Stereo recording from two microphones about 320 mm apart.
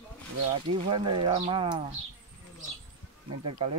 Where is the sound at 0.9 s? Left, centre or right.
Centre.